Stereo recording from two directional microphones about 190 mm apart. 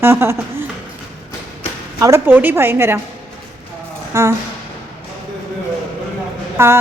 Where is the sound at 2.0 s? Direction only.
15° right (ahead or behind).